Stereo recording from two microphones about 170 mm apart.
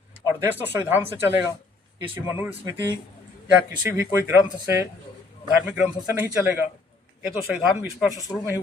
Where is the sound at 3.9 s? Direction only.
15° right (ahead or behind).